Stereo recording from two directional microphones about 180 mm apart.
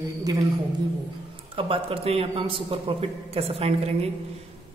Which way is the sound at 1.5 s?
30° right (ahead or behind).